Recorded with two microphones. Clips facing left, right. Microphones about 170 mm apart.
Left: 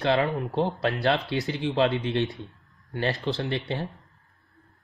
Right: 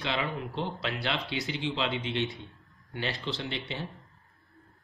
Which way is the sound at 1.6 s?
55° left (ahead or behind).